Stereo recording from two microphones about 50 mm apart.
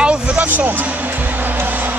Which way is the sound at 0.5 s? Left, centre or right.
Right.